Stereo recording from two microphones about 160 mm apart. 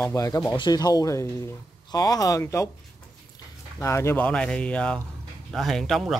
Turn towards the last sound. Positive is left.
turn(degrees=0)  # may be behind; listen again after turning